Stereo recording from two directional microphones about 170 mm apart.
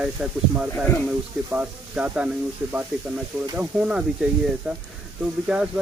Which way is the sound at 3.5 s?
5° right (ahead or behind).